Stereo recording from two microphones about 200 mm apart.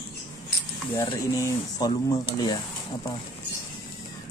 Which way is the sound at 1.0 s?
20° left (ahead or behind).